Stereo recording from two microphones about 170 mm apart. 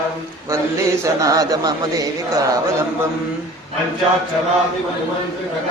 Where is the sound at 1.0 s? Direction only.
20° right (ahead or behind).